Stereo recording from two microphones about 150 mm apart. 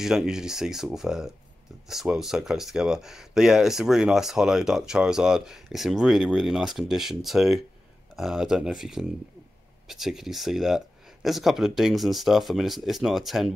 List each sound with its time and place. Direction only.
0.0 s speech: 5° right (ahead or behind)